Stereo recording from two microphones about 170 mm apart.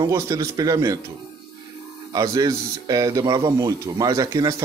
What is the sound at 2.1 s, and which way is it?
A man's voice, 20° right (ahead or behind).